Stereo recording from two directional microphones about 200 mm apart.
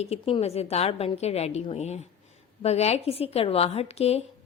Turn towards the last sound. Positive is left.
turn(degrees=30)  # may be behind; listen again after turning